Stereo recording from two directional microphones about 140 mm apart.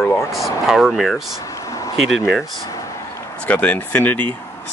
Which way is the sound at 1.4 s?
25° left (ahead or behind).